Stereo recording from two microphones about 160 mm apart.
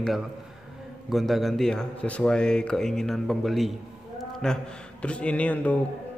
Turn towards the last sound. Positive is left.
turn(degrees=10)  # may be behind; listen again after turning